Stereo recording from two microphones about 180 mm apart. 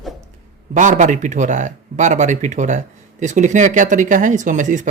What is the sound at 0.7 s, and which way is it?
Speech, 45° right (ahead or behind).